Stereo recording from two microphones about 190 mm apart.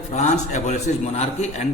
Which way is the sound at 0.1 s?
35° left (ahead or behind).